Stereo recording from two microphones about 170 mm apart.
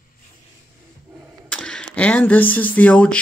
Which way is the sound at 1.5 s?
5° left (ahead or behind).